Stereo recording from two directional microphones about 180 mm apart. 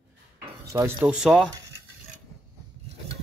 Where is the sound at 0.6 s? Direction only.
15° right (ahead or behind).